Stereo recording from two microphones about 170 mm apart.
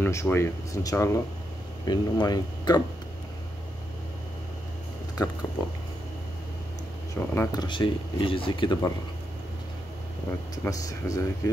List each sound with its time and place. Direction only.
0.0 s speech: 15° left (ahead or behind)
5.2 s speech: 20° left (ahead or behind)
7.2 s speech: 15° left (ahead or behind)
7.6 s speech: 30° left (ahead or behind)
10.5 s speech: 20° left (ahead or behind)